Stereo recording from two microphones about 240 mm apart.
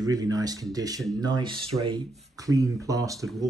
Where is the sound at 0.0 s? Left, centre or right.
Centre.